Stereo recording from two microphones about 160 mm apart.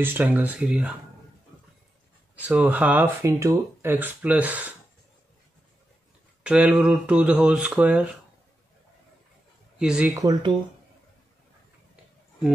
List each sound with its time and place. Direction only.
0.0 s speech: 10° right (ahead or behind)
2.4 s speech: 10° right (ahead or behind)
6.4 s speech: 5° right (ahead or behind)
9.8 s speech: 5° right (ahead or behind)
10.1 s speech: 20° right (ahead or behind)